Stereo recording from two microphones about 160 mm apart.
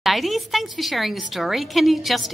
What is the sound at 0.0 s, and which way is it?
A woman's voice, centre (ahead or behind).